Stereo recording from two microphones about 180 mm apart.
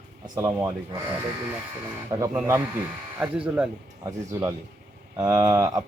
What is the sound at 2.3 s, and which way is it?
Speech, 10° right (ahead or behind).